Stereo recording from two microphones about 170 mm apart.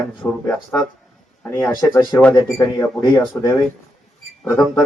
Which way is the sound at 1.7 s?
20° left (ahead or behind).